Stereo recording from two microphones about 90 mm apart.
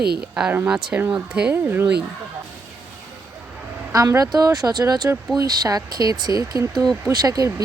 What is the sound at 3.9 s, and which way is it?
Speech, 40° right (ahead or behind).